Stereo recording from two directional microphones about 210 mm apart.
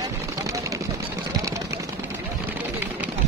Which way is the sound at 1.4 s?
15° right (ahead or behind).